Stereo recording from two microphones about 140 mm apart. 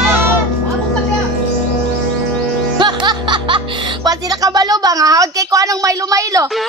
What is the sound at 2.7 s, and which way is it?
Music, 35° right (ahead or behind).